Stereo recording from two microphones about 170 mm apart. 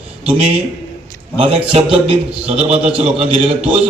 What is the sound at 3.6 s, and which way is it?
Speech, 5° right (ahead or behind).